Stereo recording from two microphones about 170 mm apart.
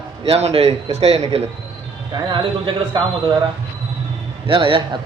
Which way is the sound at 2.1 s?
25° right (ahead or behind).